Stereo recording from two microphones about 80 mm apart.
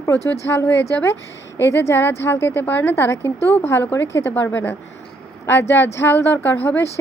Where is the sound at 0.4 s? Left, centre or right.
Left.